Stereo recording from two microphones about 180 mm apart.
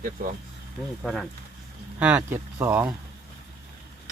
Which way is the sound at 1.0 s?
5° left (ahead or behind).